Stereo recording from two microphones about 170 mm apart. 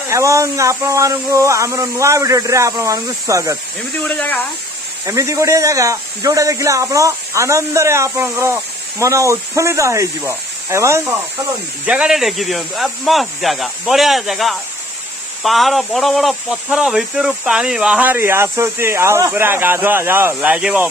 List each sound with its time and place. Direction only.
0.1 s speech: 15° right (ahead or behind)
4.0 s speech: 10° left (ahead or behind)
5.0 s speech: 20° right (ahead or behind)
11.8 s speech: 5° right (ahead or behind)